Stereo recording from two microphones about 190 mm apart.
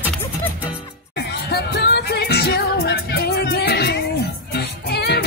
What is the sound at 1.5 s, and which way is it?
Music, 55° left (ahead or behind).